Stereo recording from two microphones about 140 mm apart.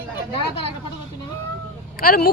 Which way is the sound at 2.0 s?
90° left.